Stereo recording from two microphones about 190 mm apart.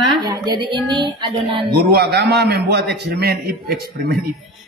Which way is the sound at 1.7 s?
60° right (ahead or behind).